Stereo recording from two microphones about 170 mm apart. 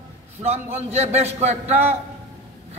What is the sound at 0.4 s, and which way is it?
A man's voice, 40° right (ahead or behind).